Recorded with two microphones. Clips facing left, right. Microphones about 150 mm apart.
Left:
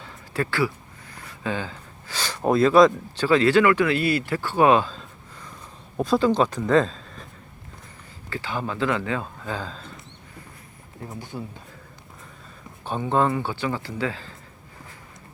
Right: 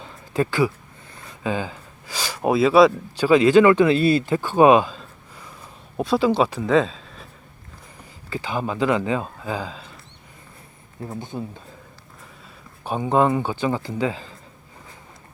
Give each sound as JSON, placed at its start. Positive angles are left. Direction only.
{"t": 0.0, "sound": "a sound", "side_deg": -20}
{"t": 1.1, "sound": "speech", "side_deg": -20}
{"t": 8.3, "sound": "speech", "side_deg": -15}
{"t": 11.1, "sound": "speech", "side_deg": -20}
{"t": 12.8, "sound": "speech", "side_deg": -10}